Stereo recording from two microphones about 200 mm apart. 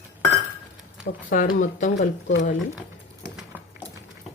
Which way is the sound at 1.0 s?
40° left (ahead or behind).